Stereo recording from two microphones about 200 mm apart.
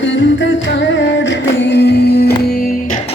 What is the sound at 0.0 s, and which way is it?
Music, 60° left (ahead or behind).